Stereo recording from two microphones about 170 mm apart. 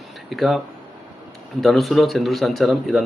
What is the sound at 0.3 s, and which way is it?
Speech, centre (ahead or behind).